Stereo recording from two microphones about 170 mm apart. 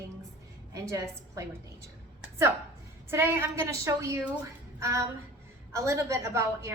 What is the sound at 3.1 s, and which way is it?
A woman's voice, 15° right (ahead or behind).